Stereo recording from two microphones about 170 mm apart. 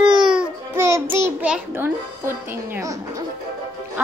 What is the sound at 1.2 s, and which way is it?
A child's voice, 10° right (ahead or behind).